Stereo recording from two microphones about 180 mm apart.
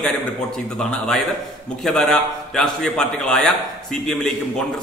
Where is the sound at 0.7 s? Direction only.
Centre (ahead or behind).